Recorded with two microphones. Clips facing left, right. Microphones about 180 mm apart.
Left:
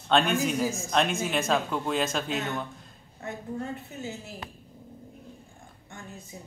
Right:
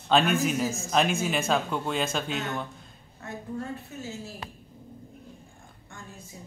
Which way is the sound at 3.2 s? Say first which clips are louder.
Left 1 dB; 20° left (ahead or behind).